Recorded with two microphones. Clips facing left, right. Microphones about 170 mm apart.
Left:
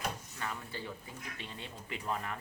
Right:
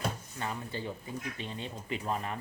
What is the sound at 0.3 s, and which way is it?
Speech, 20° right (ahead or behind).